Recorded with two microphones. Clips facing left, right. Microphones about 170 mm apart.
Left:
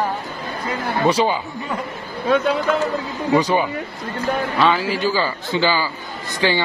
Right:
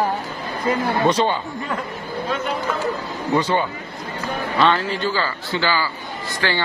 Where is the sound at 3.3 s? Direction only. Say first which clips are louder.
Left 3 dB; 10° left (ahead or behind).